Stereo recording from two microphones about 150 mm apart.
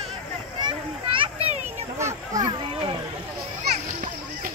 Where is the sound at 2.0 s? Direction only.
20° right (ahead or behind).